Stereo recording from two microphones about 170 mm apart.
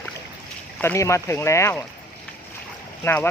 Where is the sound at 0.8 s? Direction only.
15° left (ahead or behind).